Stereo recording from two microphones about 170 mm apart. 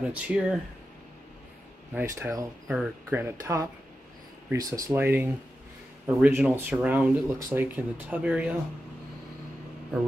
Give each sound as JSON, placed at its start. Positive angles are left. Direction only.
{"t": 0.0, "sound": "speech", "side_deg": -10}
{"t": 2.0, "sound": "speech", "side_deg": -15}